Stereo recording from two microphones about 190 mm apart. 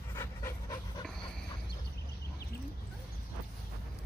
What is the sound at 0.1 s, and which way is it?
Pant, 15° left (ahead or behind).